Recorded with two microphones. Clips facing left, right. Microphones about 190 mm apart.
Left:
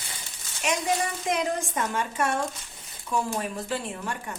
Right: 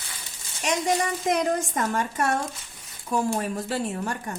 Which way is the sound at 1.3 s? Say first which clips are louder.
Right 3 dB; 40° right (ahead or behind).